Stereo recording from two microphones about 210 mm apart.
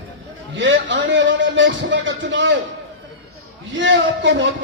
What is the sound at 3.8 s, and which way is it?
Speech, 60° right (ahead or behind).